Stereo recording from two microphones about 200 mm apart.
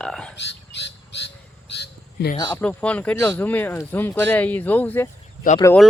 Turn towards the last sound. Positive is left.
turn(degrees=15)  # may be behind; listen again after turning